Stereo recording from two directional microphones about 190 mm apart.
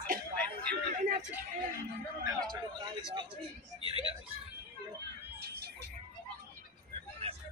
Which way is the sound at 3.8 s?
30° right (ahead or behind).